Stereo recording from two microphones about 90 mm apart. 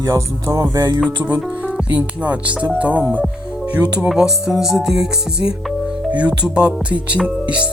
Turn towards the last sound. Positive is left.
turn(degrees=-15)  # may be behind; listen again after turning